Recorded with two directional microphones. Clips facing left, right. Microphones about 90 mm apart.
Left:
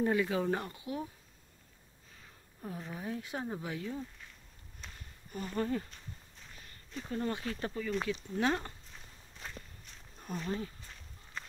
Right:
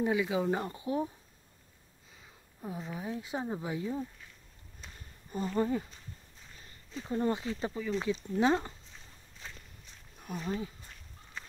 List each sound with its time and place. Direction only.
0.0 s speech: 10° right (ahead or behind)
0.7 s speech: 30° right (ahead or behind)
2.1 s a sound: 10° right (ahead or behind)
2.9 s speech: 15° right (ahead or behind)
5.3 s speech: 25° right (ahead or behind)
5.7 s speech: 10° right (ahead or behind)
7.1 s speech: 20° right (ahead or behind)
7.4 s speech: 10° right (ahead or behind)
8.1 s speech: 20° right (ahead or behind)
10.1 s speech: 10° right (ahead or behind)